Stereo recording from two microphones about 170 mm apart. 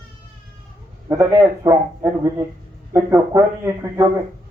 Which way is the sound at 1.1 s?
20° right (ahead or behind).